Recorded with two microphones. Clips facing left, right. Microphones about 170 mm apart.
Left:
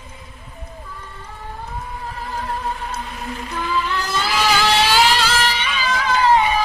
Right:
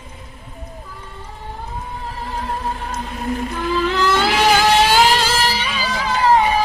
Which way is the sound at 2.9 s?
45° right (ahead or behind).